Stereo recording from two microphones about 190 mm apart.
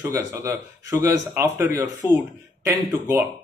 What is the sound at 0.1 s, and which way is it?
A man's voice, 15° right (ahead or behind).